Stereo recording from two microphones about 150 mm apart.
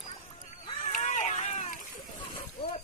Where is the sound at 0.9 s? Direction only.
55° left (ahead or behind).